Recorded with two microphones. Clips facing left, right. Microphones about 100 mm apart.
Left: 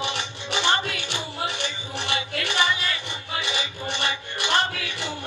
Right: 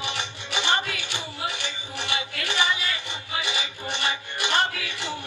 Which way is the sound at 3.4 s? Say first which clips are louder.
Left 2 dB; 15° right (ahead or behind).